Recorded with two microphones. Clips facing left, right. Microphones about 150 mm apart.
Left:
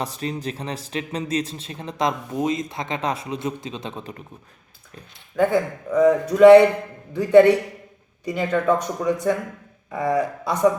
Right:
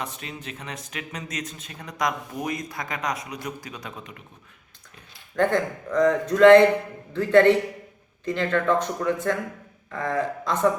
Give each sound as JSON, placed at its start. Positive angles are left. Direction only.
{"t": 0.0, "sound": "speech", "side_deg": 35}
{"t": 5.4, "sound": "a man's voice", "side_deg": 5}